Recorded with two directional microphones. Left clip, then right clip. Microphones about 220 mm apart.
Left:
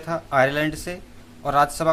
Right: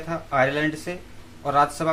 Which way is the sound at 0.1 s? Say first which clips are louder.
Left 2 dB; 20° left (ahead or behind).